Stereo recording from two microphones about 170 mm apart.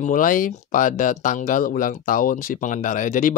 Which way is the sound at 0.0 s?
55° left (ahead or behind).